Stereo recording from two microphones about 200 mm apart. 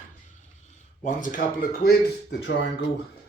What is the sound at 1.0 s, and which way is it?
Speech, 40° left (ahead or behind).